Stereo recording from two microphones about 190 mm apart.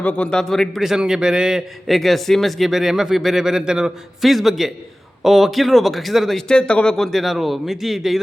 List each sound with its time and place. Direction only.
0.0 s a man's voice: 5° left (ahead or behind)